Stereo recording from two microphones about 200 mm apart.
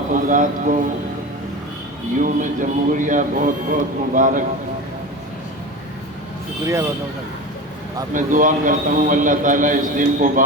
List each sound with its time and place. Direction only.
0.1 s a man's voice: 40° right (ahead or behind)
2.2 s a man's voice: 40° right (ahead or behind)
8.1 s a man's voice: 40° right (ahead or behind)